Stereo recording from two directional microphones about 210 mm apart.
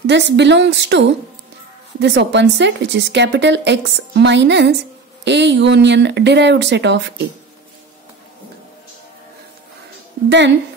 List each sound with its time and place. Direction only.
0.0 s a woman's voice: 55° right (ahead or behind)